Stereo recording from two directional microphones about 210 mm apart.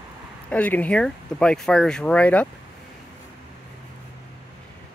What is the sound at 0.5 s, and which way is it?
Speech, 5° left (ahead or behind).